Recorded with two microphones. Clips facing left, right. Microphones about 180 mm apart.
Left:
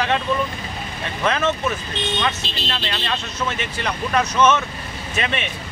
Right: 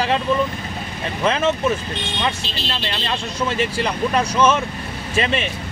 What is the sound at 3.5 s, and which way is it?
Speech, 30° right (ahead or behind).